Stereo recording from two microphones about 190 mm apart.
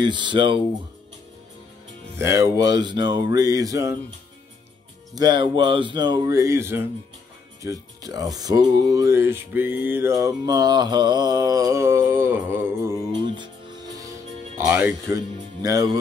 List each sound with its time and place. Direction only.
0.0 s speech: 25° right (ahead or behind)
2.1 s speech: 15° right (ahead or behind)
5.1 s speech: 20° right (ahead or behind)
14.7 s speech: 10° right (ahead or behind)
15.6 s speech: 20° right (ahead or behind)